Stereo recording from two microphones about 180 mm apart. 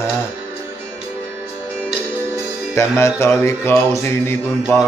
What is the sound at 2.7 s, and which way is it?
Music, 15° left (ahead or behind).